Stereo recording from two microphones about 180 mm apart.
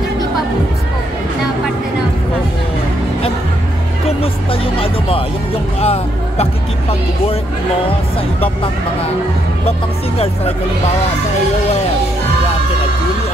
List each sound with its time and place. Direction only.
4.2 s music: 30° left (ahead or behind)
5.8 s speech: 35° left (ahead or behind)
10.1 s speech: 35° left (ahead or behind)